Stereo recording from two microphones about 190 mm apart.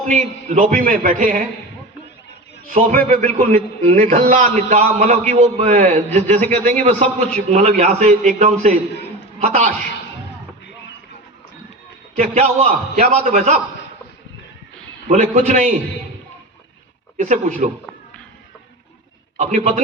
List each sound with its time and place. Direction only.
0.1 s a man's voice: 40° right (ahead or behind)
2.7 s a man's voice: 45° right (ahead or behind)
12.1 s a man's voice: 40° right (ahead or behind)
15.0 s a man's voice: 40° right (ahead or behind)
17.2 s a man's voice: 40° right (ahead or behind)
19.4 s a man's voice: 40° right (ahead or behind)